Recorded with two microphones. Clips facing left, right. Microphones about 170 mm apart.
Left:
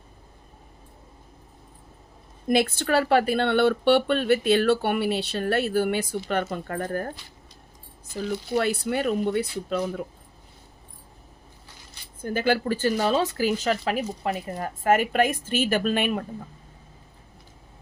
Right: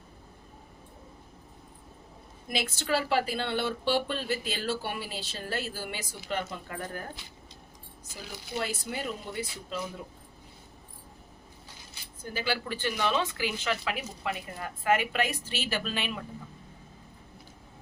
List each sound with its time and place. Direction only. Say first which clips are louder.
2.5 s speech: left 8 dB; 55° left (ahead or behind)
8.1 s speech: left 12 dB; 65° left (ahead or behind)
12.2 s speech: left 9 dB; 50° left (ahead or behind)